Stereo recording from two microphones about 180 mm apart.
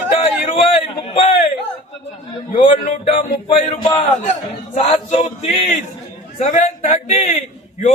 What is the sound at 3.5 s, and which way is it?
A man's voice, 30° left (ahead or behind).